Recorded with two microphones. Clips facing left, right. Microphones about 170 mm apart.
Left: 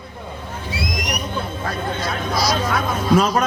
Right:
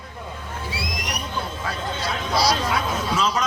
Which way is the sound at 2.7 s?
55° left (ahead or behind).